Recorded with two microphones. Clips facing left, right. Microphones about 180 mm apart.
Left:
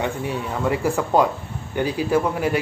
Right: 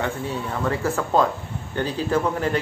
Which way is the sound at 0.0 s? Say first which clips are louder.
Left 1 dB; 15° left (ahead or behind).